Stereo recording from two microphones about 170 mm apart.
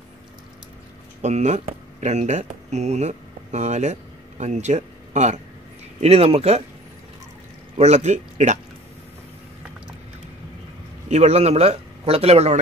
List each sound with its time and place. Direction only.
1.2 s speech: 45° right (ahead or behind)
7.7 s speech: 40° right (ahead or behind)
11.1 s speech: 40° right (ahead or behind)